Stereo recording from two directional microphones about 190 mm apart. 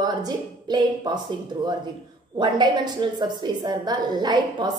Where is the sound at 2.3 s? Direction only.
25° right (ahead or behind).